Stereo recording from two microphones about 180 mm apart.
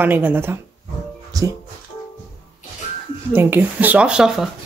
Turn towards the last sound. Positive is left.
turn(degrees=-5)  # may be behind; listen again after turning